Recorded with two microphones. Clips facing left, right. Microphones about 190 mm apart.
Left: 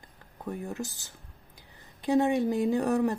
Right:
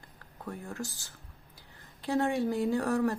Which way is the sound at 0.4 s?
20° left (ahead or behind).